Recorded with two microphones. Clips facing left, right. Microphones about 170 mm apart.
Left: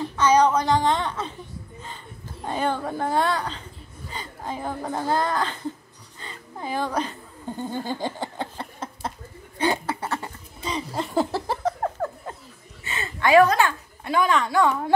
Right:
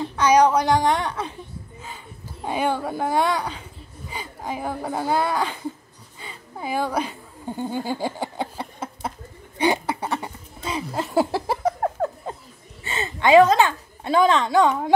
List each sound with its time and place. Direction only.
0.2 s speech: 10° right (ahead or behind)
2.4 s speech: 10° right (ahead or behind)
6.1 s chuckle: 10° right (ahead or behind)
9.6 s a sound: 15° right (ahead or behind)
12.8 s a woman's voice: 25° right (ahead or behind)